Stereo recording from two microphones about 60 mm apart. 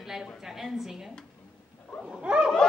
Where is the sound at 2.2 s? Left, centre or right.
Centre.